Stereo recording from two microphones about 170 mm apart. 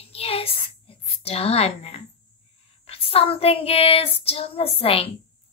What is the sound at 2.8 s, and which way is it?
Child singing, 35° left (ahead or behind).